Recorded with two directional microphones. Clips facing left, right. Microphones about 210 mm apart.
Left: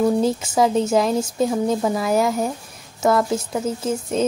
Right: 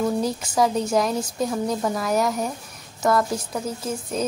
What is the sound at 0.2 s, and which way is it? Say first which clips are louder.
Speech: left 3 dB; 25° left (ahead or behind).